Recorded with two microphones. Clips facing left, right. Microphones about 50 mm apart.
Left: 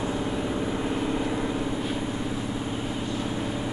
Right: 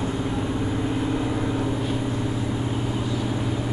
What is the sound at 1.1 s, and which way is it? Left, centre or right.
Vehicle, centre.